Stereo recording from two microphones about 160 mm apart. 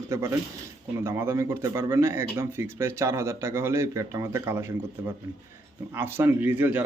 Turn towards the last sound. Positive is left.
turn(degrees=-10)  # may be behind; listen again after turning